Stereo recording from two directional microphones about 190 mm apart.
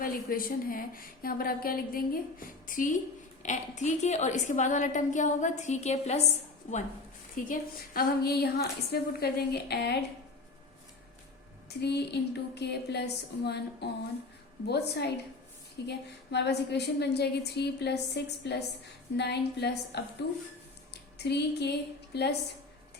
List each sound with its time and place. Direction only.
0.0 s a woman's voice: 50° left (ahead or behind)
7.4 s a woman's voice: 50° left (ahead or behind)
11.8 s a woman's voice: 60° left (ahead or behind)